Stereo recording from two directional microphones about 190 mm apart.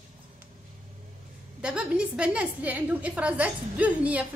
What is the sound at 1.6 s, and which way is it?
A woman's voice, 5° right (ahead or behind).